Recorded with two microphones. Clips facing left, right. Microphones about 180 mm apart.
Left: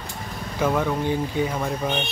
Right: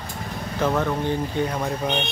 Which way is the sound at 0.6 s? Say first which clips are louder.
Even; 10° left (ahead or behind).